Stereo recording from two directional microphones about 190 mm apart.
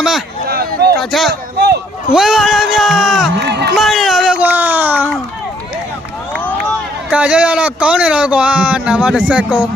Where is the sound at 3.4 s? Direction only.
60° right (ahead or behind).